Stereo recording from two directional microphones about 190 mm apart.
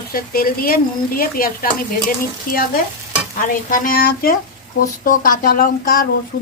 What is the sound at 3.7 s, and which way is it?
Speech, 50° left (ahead or behind).